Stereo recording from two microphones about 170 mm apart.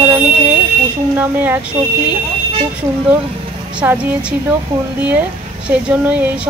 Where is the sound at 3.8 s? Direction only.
10° right (ahead or behind).